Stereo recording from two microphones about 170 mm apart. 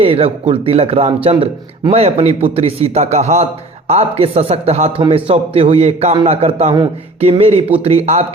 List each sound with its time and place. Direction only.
0.0 s a man's voice: 35° right (ahead or behind)